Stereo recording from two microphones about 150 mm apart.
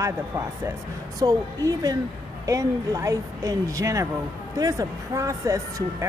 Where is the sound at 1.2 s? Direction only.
25° right (ahead or behind).